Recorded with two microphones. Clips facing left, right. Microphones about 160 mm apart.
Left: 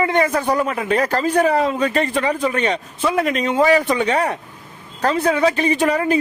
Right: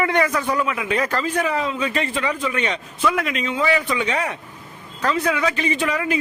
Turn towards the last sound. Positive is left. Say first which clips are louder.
# left 5 dB
turn(degrees=35)  # may be behind; listen again after turning